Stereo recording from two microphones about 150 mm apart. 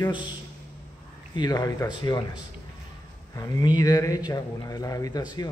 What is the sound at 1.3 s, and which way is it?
Speech, 30° left (ahead or behind).